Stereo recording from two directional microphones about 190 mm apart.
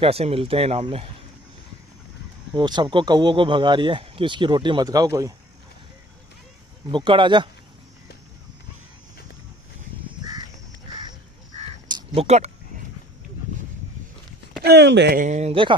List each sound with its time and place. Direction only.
0.0 s speech: 30° right (ahead or behind)
2.5 s speech: 25° right (ahead or behind)
6.9 s speech: 25° right (ahead or behind)
11.5 s crow: 30° right (ahead or behind)
14.6 s speech: 65° right (ahead or behind)
15.1 s speech: 40° right (ahead or behind)